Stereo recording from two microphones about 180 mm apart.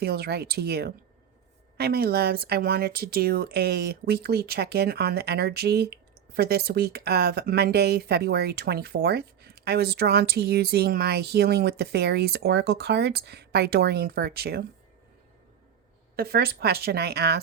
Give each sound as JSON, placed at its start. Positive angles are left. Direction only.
{"t": 0.0, "sound": "speech", "side_deg": -60}
{"t": 16.1, "sound": "speech", "side_deg": -60}